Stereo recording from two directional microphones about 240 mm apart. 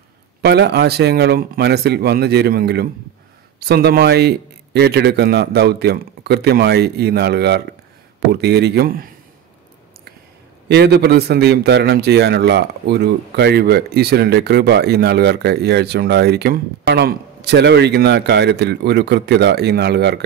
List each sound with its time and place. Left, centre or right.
0.4 s a man's voice: right
10.7 s a man's voice: right